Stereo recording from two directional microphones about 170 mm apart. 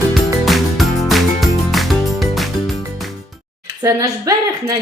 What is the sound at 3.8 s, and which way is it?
Speech, 20° right (ahead or behind).